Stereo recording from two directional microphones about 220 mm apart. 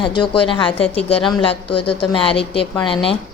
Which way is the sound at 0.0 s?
20° left (ahead or behind).